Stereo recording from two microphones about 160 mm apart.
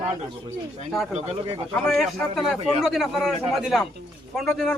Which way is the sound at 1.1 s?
35° right (ahead or behind).